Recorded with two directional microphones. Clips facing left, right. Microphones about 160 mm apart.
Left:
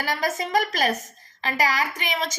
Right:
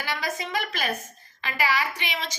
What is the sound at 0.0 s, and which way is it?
A woman's voice, 45° left (ahead or behind).